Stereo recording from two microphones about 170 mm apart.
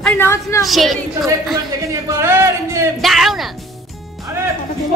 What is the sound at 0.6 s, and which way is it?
Speech, centre (ahead or behind).